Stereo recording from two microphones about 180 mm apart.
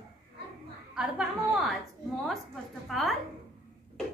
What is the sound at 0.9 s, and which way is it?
Speech, centre (ahead or behind).